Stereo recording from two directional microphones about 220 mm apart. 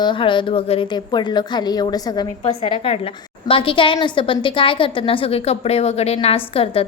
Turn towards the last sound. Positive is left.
turn(degrees=25)  # may be behind; listen again after turning